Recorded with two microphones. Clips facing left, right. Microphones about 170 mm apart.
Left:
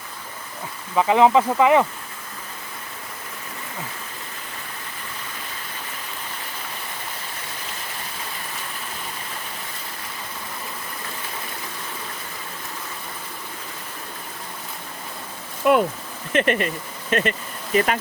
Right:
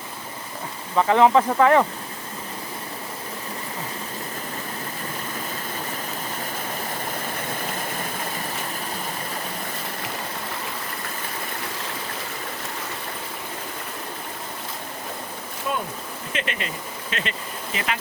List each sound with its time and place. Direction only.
0.9 s speech: 10° left (ahead or behind)
15.6 s stream: 70° left (ahead or behind)
16.3 s speech: 55° left (ahead or behind)